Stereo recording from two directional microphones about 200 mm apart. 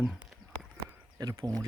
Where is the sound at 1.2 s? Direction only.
20° right (ahead or behind).